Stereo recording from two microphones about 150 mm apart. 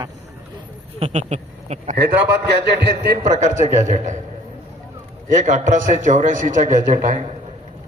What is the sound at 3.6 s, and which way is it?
Speech, 55° right (ahead or behind).